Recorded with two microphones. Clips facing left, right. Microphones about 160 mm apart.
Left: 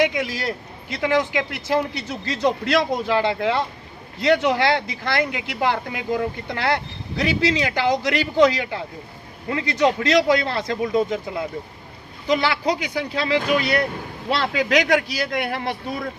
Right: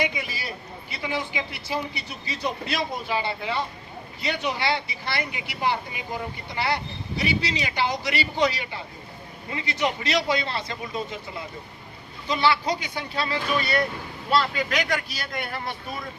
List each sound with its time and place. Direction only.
0.0 s speech: 85° left
4.2 s speech: 90° left